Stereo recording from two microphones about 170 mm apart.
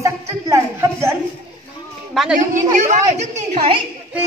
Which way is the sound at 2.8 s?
45° right (ahead or behind).